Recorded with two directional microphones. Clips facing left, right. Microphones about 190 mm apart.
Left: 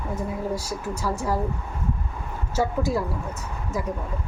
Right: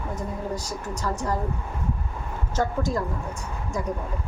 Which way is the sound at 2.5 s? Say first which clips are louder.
Left 2 dB; 10° left (ahead or behind).